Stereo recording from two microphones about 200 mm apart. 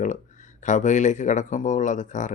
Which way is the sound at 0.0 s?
40° left (ahead or behind).